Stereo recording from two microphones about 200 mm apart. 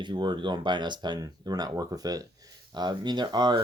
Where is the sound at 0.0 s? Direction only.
20° right (ahead or behind).